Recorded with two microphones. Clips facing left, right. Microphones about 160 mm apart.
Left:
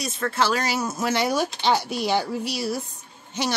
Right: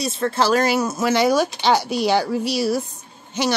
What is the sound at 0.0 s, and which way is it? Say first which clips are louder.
Speech: right 4 dB; 30° right (ahead or behind).